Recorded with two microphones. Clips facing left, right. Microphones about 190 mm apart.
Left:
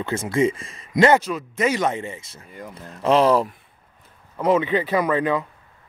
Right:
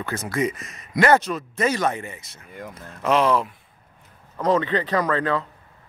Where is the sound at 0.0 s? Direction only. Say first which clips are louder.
Left 4 dB; 25° left (ahead or behind).